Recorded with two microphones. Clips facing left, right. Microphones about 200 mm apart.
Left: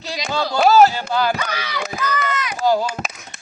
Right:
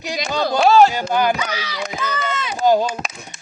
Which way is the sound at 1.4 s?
55° left (ahead or behind).